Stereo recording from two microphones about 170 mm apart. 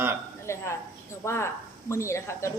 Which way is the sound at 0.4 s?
15° left (ahead or behind).